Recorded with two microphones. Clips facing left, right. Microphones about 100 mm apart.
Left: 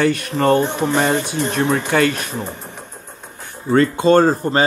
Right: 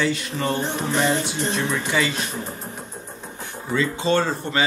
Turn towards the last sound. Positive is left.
turn(degrees=40)  # may be behind; listen again after turning